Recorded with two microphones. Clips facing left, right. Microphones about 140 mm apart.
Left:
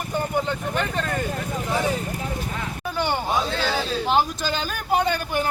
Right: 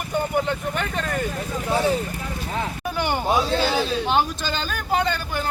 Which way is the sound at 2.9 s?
Centre (ahead or behind).